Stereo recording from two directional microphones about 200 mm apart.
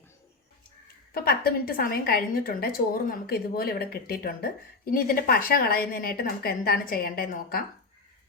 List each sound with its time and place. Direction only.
1.1 s a woman's voice: 50° left (ahead or behind)